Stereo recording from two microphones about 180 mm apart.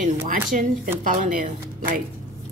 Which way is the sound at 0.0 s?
50° right (ahead or behind).